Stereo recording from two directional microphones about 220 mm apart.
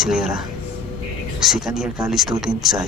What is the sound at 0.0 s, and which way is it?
Speech, centre (ahead or behind).